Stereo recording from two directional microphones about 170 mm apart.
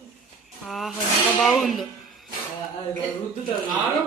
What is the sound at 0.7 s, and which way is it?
Speech, centre (ahead or behind).